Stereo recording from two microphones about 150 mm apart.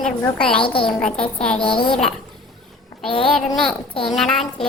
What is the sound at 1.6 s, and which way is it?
Speech, 35° left (ahead or behind).